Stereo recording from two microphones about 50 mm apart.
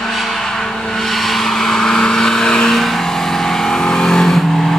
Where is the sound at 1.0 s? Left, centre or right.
Centre.